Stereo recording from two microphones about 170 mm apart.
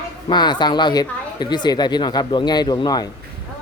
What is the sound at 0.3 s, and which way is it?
Speech, 25° left (ahead or behind).